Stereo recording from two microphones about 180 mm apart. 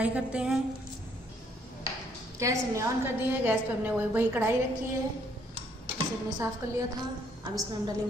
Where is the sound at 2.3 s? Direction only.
15° right (ahead or behind).